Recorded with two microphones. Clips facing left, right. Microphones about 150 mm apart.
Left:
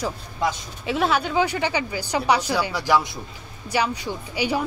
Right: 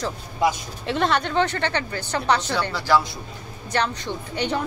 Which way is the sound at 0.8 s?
5° left (ahead or behind).